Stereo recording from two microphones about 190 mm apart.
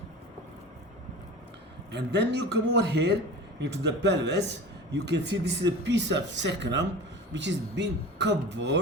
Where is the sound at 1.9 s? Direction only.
65° right (ahead or behind).